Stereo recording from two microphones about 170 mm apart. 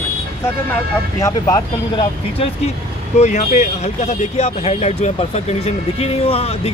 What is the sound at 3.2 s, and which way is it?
Speech, 45° left (ahead or behind).